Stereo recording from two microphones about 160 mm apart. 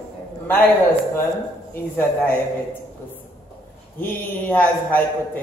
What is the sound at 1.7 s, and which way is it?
Speech, 10° left (ahead or behind).